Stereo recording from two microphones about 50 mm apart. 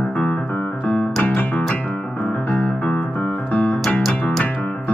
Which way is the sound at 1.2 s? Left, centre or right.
Left.